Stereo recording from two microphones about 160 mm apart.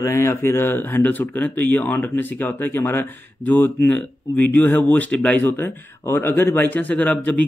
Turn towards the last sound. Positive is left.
turn(degrees=10)  # may be behind; listen again after turning